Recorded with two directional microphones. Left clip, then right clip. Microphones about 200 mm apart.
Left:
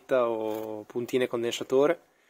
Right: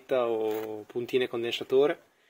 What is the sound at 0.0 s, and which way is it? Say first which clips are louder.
Speech: left 1 dB; 30° left (ahead or behind).